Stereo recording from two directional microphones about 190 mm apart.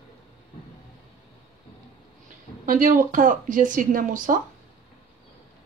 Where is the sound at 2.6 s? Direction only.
45° right (ahead or behind).